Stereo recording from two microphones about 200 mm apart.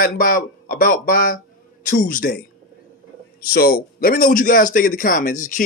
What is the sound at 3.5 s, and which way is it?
A man's voice, 50° left (ahead or behind).